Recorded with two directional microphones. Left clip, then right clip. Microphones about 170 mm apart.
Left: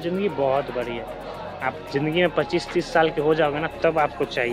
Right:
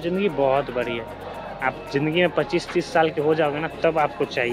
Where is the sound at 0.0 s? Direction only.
15° right (ahead or behind).